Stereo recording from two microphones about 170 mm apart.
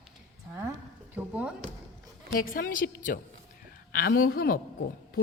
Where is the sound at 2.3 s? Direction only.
55° left (ahead or behind).